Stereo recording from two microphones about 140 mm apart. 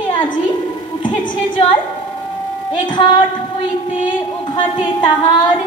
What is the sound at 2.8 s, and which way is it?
Music, 35° left (ahead or behind).